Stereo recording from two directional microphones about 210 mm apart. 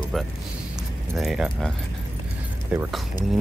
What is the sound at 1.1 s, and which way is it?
Speech, centre (ahead or behind).